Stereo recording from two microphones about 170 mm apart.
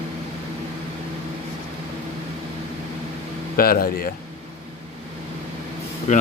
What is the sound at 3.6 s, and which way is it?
Speech, 60° left (ahead or behind).